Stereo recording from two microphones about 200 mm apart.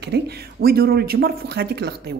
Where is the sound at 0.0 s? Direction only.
50° right (ahead or behind).